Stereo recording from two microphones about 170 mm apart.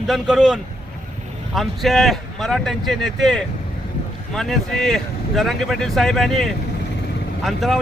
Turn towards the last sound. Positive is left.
turn(degrees=0)  # may be behind; listen again after turning